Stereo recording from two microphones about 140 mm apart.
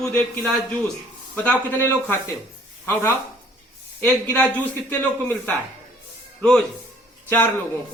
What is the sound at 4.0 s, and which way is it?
Speech, 10° left (ahead or behind).